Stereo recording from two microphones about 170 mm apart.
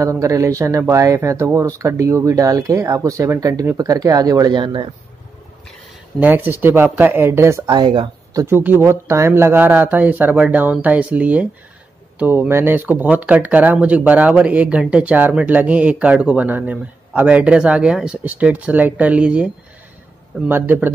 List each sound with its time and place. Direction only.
0.0 s speech: 20° right (ahead or behind)
6.1 s speech: 10° right (ahead or behind)